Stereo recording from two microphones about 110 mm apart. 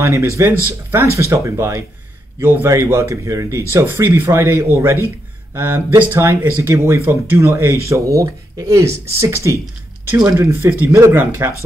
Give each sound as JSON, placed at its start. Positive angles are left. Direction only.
{"t": 0.0, "sound": "speech", "side_deg": -25}